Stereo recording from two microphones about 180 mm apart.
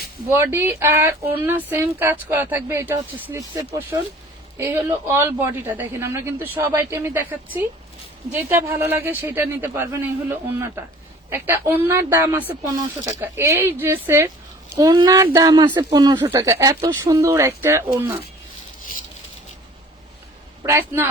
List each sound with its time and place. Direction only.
0.3 s speech: 15° right (ahead or behind)
20.7 s speech: 15° right (ahead or behind)